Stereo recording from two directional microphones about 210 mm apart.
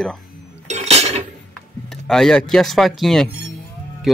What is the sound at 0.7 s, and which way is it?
Dishes, 30° right (ahead or behind).